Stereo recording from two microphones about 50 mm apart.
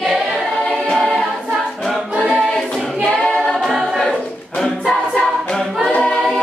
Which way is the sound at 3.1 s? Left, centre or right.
Centre.